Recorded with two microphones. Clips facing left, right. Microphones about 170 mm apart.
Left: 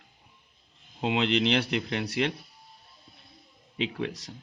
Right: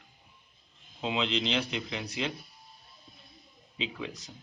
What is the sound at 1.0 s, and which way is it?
Speech, 75° left (ahead or behind).